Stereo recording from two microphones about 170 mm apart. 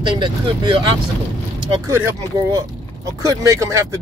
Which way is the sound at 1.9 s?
15° right (ahead or behind).